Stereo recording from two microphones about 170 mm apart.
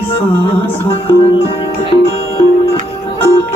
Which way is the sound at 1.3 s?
35° left (ahead or behind).